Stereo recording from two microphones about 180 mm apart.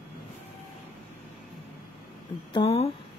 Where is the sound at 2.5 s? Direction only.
35° left (ahead or behind).